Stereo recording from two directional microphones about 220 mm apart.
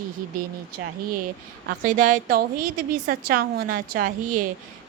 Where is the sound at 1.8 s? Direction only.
35° right (ahead or behind).